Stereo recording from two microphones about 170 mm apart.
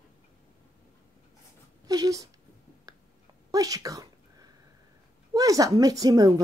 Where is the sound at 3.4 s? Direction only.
20° right (ahead or behind).